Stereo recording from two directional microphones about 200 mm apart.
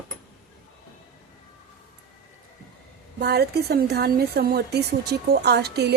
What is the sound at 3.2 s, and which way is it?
Speech, 55° right (ahead or behind).